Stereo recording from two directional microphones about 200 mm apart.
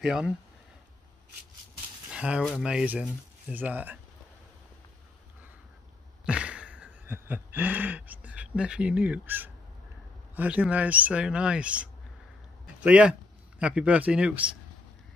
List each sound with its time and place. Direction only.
0.0 s speech: 5° right (ahead or behind)
2.0 s speech: 5° right (ahead or behind)
6.2 s a sound: 5° right (ahead or behind)
10.3 s speech: 5° right (ahead or behind)